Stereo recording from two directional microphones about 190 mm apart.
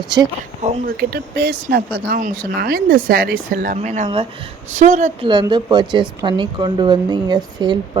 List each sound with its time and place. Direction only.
0.9 s a woman's voice: 55° right (ahead or behind)
5.2 s speech: 25° right (ahead or behind)